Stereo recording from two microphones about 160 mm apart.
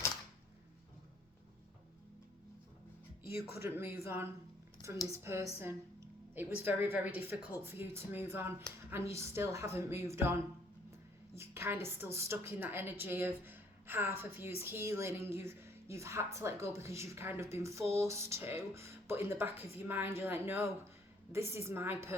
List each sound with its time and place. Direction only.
3.5 s a woman's voice: 15° right (ahead or behind)
11.3 s a woman's voice: 15° right (ahead or behind)